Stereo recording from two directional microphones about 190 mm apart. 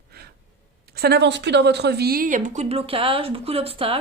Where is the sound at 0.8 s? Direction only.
55° right (ahead or behind); by 4.0 s 30° right (ahead or behind).